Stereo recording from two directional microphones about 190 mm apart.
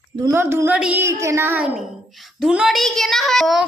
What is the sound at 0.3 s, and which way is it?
A woman's voice, 10° right (ahead or behind).